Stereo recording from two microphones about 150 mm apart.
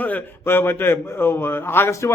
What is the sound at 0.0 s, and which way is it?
A man's voice, 10° left (ahead or behind).